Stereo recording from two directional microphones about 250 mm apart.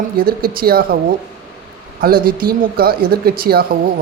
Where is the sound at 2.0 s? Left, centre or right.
Right.